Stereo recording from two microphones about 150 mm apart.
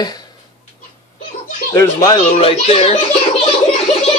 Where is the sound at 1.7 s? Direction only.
20° left (ahead or behind).